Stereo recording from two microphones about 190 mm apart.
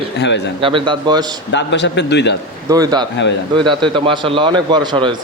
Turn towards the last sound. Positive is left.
turn(degrees=-25)  # may be behind; listen again after turning